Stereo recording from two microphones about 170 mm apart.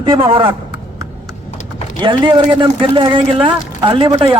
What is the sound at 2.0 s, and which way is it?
A man's voice, 30° right (ahead or behind).